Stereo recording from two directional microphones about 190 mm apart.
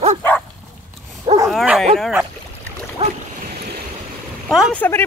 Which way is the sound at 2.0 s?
Centre (ahead or behind).